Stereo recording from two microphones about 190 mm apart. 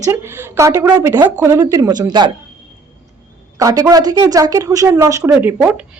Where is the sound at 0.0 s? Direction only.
15° right (ahead or behind).